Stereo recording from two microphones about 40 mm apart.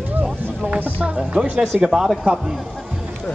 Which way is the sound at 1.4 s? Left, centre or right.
Centre.